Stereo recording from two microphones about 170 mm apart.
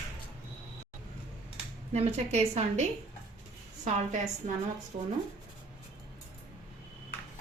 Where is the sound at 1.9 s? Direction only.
40° right (ahead or behind).